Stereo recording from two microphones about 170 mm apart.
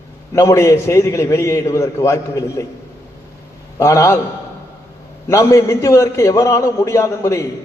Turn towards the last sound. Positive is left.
turn(degrees=15)  # may be behind; listen again after turning